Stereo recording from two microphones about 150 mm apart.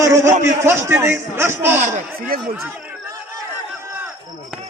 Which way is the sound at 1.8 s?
55° right (ahead or behind).